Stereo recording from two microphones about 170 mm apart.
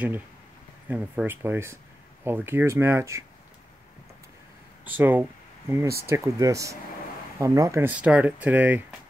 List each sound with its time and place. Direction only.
0.8 s speech: 10° right (ahead or behind)
4.8 s speech: 10° right (ahead or behind)